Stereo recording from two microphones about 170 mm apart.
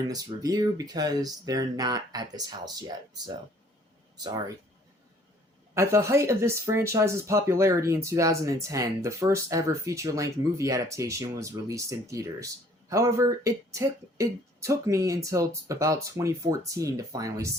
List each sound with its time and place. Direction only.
0.0 s speech: 20° right (ahead or behind)
4.2 s speech: 25° right (ahead or behind)
5.7 s speech: 15° right (ahead or behind)